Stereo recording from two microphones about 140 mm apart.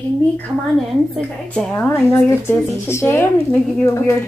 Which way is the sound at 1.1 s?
5° left (ahead or behind).